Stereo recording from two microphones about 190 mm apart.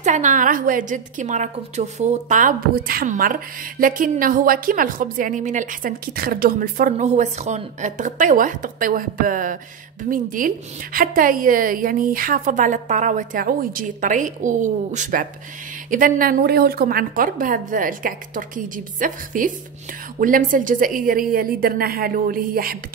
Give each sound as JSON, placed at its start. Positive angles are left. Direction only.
{"t": 0.0, "sound": "a woman's voice", "side_deg": -40}